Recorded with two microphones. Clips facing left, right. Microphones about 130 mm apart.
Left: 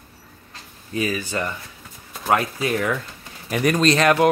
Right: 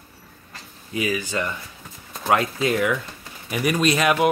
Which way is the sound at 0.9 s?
15° right (ahead or behind).